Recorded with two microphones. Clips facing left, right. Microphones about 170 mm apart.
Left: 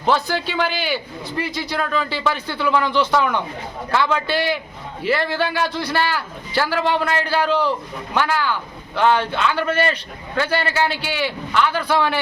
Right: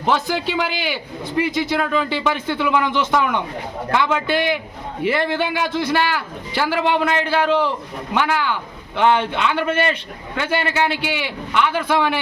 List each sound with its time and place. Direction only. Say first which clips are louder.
0.0 s a man's voice: even; 15° right (ahead or behind)